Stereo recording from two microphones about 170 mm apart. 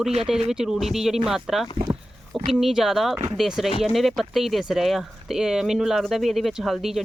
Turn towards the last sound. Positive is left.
turn(degrees=0)  # may be behind; listen again after turning